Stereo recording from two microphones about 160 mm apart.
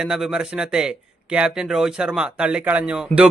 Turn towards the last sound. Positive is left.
turn(degrees=-5)  # may be behind; listen again after turning